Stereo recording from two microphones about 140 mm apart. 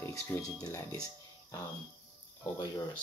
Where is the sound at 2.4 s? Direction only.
30° left (ahead or behind).